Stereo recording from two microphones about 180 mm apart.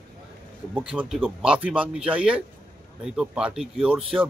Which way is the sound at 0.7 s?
5° right (ahead or behind).